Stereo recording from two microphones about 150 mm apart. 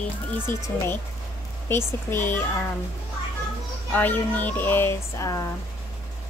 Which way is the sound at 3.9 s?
10° left (ahead or behind).